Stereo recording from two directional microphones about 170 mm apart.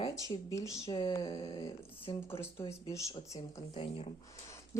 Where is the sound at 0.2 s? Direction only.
20° left (ahead or behind).